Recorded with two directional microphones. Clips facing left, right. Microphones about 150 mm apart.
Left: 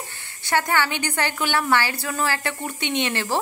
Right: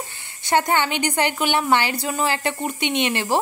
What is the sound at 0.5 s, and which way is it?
Speech, 20° right (ahead or behind).